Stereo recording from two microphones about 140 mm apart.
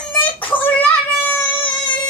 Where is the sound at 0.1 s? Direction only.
10° left (ahead or behind).